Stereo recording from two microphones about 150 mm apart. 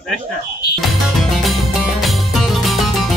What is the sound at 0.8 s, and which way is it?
Music, centre (ahead or behind).